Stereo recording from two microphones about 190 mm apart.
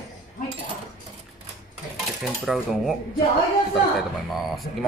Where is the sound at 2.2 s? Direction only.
5° right (ahead or behind).